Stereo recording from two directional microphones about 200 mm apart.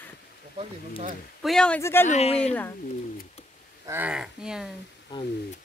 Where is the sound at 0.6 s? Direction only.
35° right (ahead or behind).